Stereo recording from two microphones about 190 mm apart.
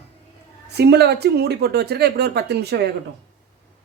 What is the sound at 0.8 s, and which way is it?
Speech, 60° right (ahead or behind).